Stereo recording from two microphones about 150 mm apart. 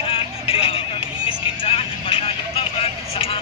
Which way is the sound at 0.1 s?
40° left (ahead or behind).